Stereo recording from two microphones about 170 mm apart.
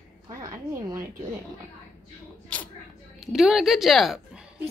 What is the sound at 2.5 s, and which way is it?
Single-lens reflex camera, 5° left (ahead or behind).